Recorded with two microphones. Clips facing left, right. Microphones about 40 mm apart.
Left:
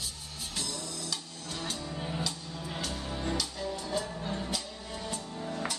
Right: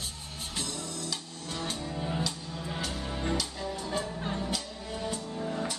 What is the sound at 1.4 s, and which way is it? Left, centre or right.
Music, right.